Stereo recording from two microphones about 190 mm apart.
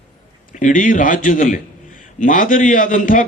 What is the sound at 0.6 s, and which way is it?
A man's voice, 45° left (ahead or behind).